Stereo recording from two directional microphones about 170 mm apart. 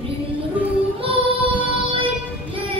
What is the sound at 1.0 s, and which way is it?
Child singing, 30° right (ahead or behind).